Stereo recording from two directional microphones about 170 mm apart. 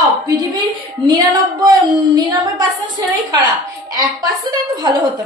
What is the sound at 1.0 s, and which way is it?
A woman's voice, 20° right (ahead or behind).